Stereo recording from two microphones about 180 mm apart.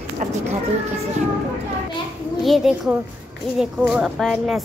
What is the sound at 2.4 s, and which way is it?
Speech, centre (ahead or behind).